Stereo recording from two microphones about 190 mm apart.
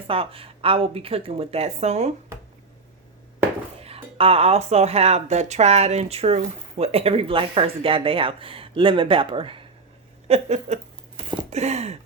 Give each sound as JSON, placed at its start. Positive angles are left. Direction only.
{"t": 0.1, "sound": "speech", "side_deg": -30}
{"t": 3.8, "sound": "speech", "side_deg": -30}